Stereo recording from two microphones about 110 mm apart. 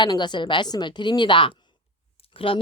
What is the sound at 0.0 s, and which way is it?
Speech, 45° left (ahead or behind).